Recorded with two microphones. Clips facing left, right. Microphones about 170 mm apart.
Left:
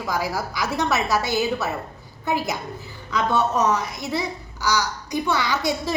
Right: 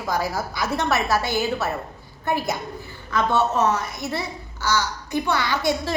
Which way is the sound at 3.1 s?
15° left (ahead or behind).